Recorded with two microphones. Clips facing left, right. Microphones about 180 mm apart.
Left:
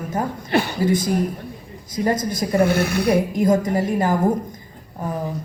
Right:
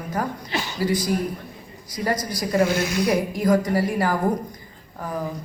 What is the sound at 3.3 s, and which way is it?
Speech, 25° left (ahead or behind).